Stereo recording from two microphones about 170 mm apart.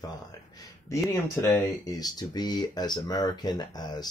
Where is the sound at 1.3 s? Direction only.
20° left (ahead or behind).